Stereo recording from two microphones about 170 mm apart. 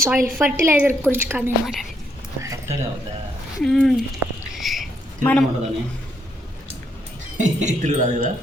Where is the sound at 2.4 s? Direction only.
15° right (ahead or behind).